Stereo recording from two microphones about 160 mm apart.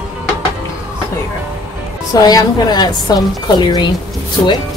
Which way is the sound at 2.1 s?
25° left (ahead or behind).